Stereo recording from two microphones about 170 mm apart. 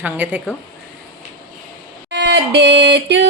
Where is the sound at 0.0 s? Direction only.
10° right (ahead or behind).